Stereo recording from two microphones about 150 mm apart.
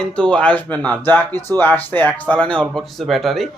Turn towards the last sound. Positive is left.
turn(degrees=0)  # may be behind; listen again after turning